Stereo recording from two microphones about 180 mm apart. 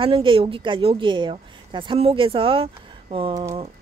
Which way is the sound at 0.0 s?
30° right (ahead or behind).